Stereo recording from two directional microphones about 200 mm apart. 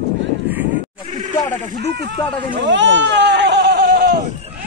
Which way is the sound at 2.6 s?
65° right (ahead or behind).